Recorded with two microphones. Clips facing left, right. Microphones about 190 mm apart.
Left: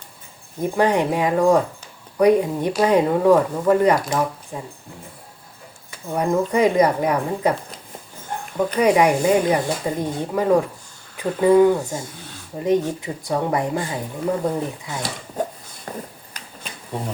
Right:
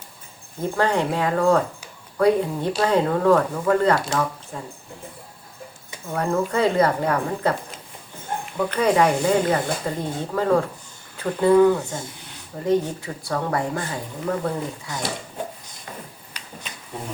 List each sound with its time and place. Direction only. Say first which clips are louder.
0.6 s speech: left 3 dB; 15° left (ahead or behind)
6.1 s speech: left 3 dB; 15° left (ahead or behind)
8.5 s speech: left 3 dB; 15° left (ahead or behind)
15.4 s a sound: left 6 dB; 40° left (ahead or behind)